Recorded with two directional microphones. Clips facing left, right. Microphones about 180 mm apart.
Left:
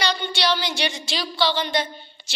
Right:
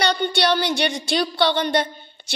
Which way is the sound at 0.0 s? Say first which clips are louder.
Right 4 dB; 55° right (ahead or behind).